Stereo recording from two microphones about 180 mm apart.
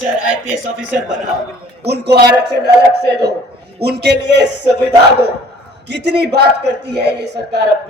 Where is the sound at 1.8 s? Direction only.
70° right (ahead or behind).